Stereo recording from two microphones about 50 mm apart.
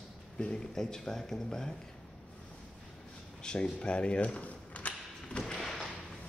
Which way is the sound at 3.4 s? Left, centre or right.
Centre.